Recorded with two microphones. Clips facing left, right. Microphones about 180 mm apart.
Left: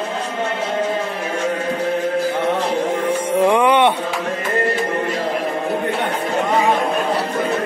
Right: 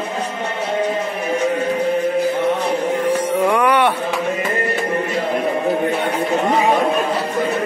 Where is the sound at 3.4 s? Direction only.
20° left (ahead or behind).